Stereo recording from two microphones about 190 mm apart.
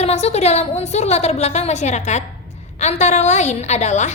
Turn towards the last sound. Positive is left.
turn(degrees=35)  # may be behind; listen again after turning